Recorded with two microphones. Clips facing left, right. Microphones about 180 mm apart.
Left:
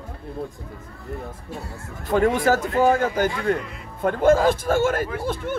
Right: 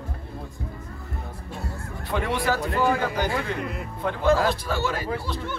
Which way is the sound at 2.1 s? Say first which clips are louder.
Left 7 dB; 45° left (ahead or behind).